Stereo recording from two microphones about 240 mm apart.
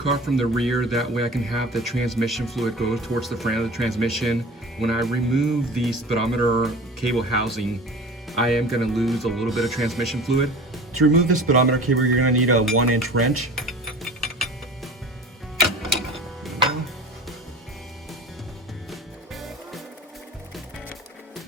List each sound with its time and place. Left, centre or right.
0.1 s speech: centre
10.9 s speech: right
12.2 s speech: right
13.6 s mechanisms: centre
15.8 s music: centre
18.9 s music: centre